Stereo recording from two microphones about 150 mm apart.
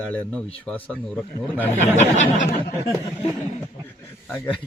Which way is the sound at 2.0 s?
55° left (ahead or behind).